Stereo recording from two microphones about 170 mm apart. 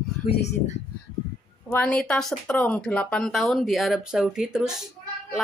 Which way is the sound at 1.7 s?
5° left (ahead or behind).